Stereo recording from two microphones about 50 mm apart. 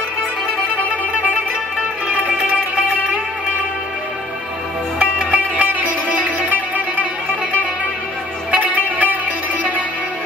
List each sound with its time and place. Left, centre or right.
2.2 s music: right
4.9 s music: centre
8.9 s music: right